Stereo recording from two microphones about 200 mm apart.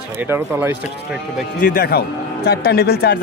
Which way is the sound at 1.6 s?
50° left (ahead or behind).